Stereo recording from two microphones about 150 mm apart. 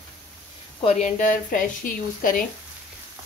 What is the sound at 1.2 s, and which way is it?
Speech, 65° left (ahead or behind).